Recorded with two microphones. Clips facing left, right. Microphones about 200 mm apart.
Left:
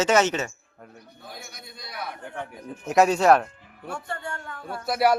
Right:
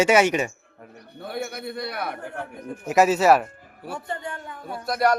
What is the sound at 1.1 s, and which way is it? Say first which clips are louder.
A man's voice: right 14 dB; 65° right (ahead or behind).